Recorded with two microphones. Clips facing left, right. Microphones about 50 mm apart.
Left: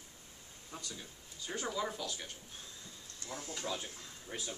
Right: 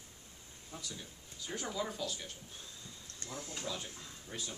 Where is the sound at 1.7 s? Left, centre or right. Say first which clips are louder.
Even; centre.